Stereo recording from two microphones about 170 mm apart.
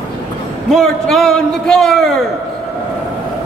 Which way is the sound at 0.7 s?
Centre (ahead or behind).